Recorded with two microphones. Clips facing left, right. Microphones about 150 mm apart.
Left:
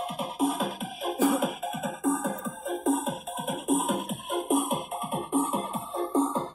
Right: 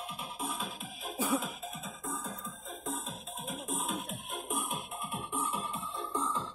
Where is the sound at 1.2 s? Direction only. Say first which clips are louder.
Left 8 dB; 75° left (ahead or behind); by 4.0 s 55° left (ahead or behind).